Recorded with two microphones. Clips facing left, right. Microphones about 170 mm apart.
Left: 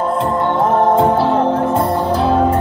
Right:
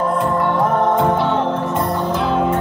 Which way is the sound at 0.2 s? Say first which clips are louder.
Left 2 dB; 25° left (ahead or behind).